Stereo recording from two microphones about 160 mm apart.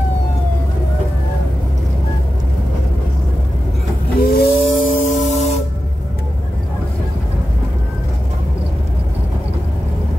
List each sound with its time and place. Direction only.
4.2 s hiss: 70° left (ahead or behind); by 5.6 s 45° left (ahead or behind)